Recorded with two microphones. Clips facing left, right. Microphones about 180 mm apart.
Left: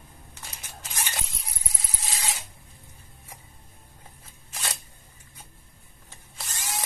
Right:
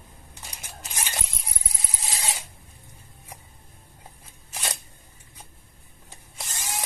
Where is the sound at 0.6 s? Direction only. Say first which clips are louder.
Right 1 dB; 15° right (ahead or behind).